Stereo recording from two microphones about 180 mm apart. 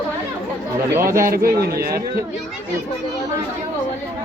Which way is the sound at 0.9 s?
15° right (ahead or behind).